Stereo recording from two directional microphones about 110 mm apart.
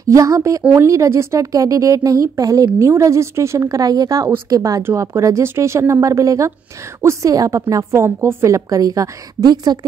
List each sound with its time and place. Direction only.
0.1 s a woman's voice: 30° right (ahead or behind)